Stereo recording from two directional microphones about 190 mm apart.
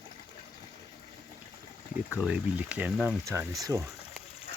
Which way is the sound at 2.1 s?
5° right (ahead or behind).